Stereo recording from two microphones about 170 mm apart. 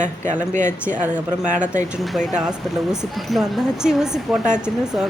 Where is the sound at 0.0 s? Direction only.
45° right (ahead or behind).